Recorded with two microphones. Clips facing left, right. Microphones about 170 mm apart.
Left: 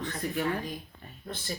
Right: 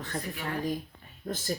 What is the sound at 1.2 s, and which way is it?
Speech, 45° right (ahead or behind).